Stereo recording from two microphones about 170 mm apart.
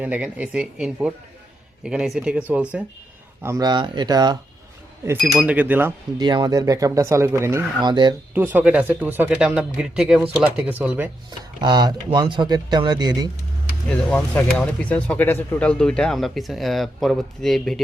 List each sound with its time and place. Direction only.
0.0 s speech: 10° right (ahead or behind)
3.4 s speech: 20° right (ahead or behind)
5.1 s speech: 5° right (ahead or behind)
6.1 s speech: 25° right (ahead or behind)
8.3 s speech: 10° right (ahead or behind)
11.6 s speech: 25° right (ahead or behind)
13.8 s speech: 10° left (ahead or behind)